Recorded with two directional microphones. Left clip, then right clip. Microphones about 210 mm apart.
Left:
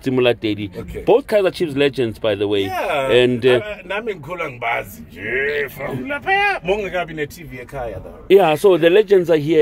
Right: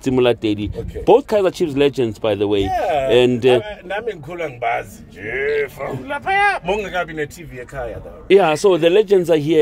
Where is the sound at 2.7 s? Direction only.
50° left (ahead or behind).